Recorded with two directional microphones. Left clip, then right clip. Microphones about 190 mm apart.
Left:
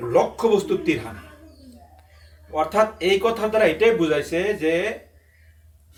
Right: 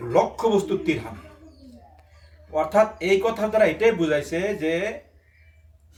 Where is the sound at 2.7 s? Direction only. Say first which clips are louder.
Even; 20° right (ahead or behind).